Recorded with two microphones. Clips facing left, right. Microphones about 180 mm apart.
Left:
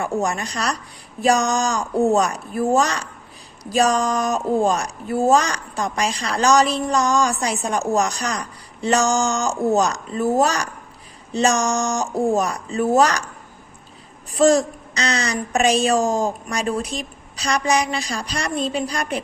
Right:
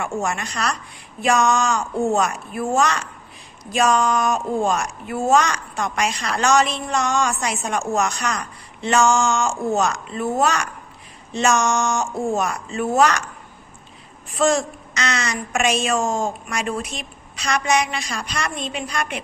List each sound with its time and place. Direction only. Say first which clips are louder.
0.0 s speech: left 2 dB; 35° left (ahead or behind)
14.3 s speech: left 4 dB; 35° left (ahead or behind)